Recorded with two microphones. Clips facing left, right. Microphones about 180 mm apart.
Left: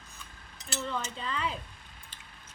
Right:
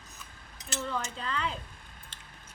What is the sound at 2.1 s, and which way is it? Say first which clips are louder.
Scissors: right 1 dB; 80° right.